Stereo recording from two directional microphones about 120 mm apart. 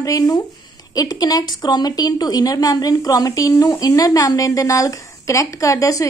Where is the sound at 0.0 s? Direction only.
30° left (ahead or behind).